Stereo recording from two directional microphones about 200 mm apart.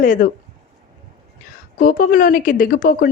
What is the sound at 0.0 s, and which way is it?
Speech, 40° left (ahead or behind).